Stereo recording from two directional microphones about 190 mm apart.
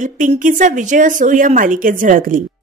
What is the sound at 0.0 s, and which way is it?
A woman's voice, 45° right (ahead or behind).